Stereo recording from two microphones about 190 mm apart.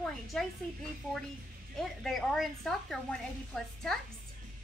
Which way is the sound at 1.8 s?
Centre (ahead or behind).